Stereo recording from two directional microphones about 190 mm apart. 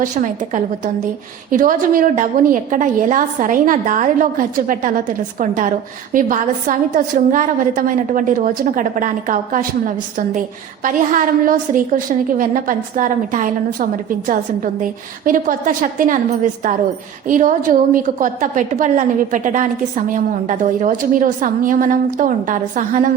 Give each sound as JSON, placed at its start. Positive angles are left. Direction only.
{"t": 0.0, "sound": "a woman's voice", "side_deg": -45}
{"t": 14.8, "sound": "a woman's voice", "side_deg": -45}
{"t": 17.2, "sound": "a woman's voice", "side_deg": -45}